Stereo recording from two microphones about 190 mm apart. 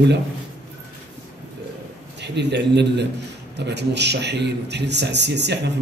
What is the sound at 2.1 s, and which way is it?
Speech, 65° right (ahead or behind).